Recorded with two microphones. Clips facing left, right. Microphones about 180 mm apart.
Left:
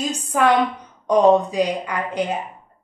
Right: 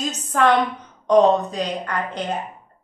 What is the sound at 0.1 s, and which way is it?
A woman's voice, 10° left (ahead or behind).